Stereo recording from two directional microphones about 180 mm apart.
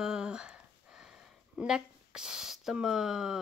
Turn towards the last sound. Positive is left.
turn(degrees=-5)  # may be behind; listen again after turning